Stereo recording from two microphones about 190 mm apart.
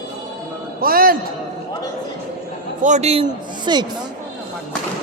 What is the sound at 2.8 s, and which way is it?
Speech, 35° right (ahead or behind).